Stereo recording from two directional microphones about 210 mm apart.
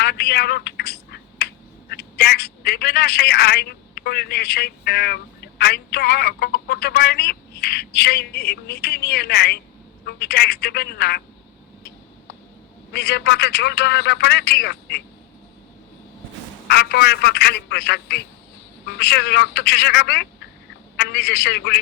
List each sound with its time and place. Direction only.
0.0 s a sound: 50° left (ahead or behind)
1.9 s a woman's voice: 50° left (ahead or behind)
12.9 s a man's voice: 50° left (ahead or behind)
16.6 s a man's voice: 50° left (ahead or behind)